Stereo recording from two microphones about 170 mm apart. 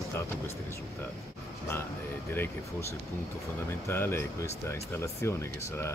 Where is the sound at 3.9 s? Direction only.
15° left (ahead or behind).